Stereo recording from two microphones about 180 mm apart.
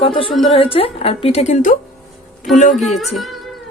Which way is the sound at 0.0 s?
30° left (ahead or behind).